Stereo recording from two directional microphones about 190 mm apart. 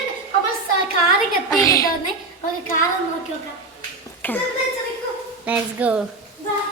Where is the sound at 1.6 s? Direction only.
15° left (ahead or behind).